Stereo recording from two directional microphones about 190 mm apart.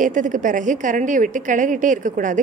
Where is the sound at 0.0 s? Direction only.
45° right (ahead or behind).